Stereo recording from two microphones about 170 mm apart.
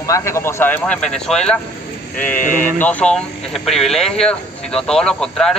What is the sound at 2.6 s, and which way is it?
Speech, 10° left (ahead or behind).